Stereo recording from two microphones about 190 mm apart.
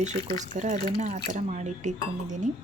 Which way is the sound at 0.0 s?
35° right (ahead or behind).